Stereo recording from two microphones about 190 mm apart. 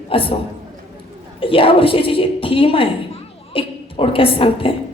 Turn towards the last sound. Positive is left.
turn(degrees=30)  # may be behind; listen again after turning